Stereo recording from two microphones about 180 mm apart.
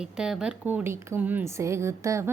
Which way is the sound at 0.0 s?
5° right (ahead or behind).